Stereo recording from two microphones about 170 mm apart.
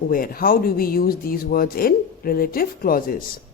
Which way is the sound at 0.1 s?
60° left (ahead or behind).